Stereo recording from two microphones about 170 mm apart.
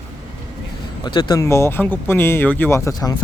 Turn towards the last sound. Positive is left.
turn(degrees=20)  # may be behind; listen again after turning